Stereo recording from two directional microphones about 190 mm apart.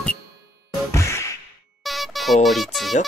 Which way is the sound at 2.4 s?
Centre (ahead or behind).